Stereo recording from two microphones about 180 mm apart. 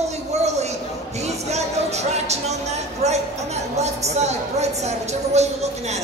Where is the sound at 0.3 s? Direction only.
35° right (ahead or behind).